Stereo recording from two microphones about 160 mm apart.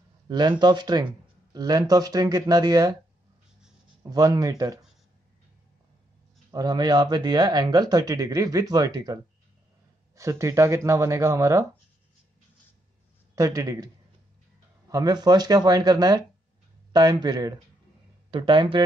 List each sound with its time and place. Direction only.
0.3 s speech: 25° right (ahead or behind)
4.0 s speech: 20° right (ahead or behind)
6.5 s speech: 25° right (ahead or behind)
13.3 s speech: 20° right (ahead or behind)
14.9 s speech: 25° right (ahead or behind)